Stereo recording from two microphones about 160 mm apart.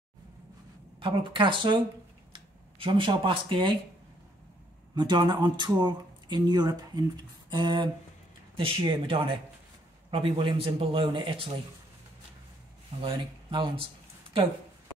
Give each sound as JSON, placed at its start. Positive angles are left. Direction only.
{"t": 0.9, "sound": "a man's voice", "side_deg": -30}
{"t": 2.8, "sound": "a man's voice", "side_deg": -30}
{"t": 4.9, "sound": "a man's voice", "side_deg": -30}
{"t": 13.0, "sound": "a man's voice", "side_deg": -30}